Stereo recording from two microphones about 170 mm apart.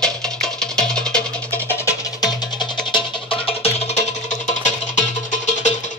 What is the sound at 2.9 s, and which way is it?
Music, 35° left (ahead or behind).